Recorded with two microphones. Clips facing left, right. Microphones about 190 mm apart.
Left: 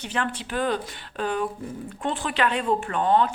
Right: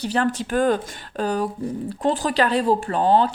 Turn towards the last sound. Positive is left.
turn(degrees=-30)  # may be behind; listen again after turning